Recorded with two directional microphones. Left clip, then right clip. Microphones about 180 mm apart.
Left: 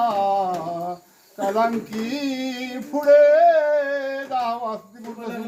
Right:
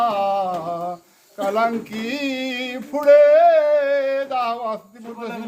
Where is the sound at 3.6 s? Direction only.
50° right (ahead or behind).